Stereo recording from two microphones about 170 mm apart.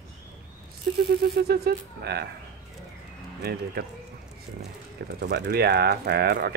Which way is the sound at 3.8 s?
65° right (ahead or behind).